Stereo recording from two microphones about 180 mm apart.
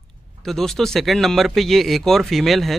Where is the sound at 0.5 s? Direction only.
Centre (ahead or behind).